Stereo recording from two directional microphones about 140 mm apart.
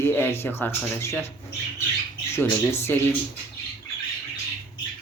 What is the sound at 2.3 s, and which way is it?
Speech, 20° left (ahead or behind).